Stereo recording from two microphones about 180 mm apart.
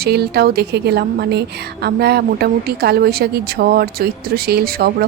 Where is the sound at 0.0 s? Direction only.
65° right (ahead or behind).